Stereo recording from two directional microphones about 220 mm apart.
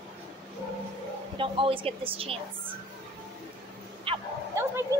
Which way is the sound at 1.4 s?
25° right (ahead or behind).